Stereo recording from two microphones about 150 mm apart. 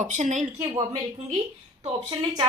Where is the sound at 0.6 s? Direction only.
25° right (ahead or behind).